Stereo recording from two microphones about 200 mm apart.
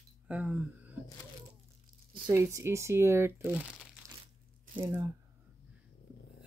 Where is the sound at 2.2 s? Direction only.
15° right (ahead or behind).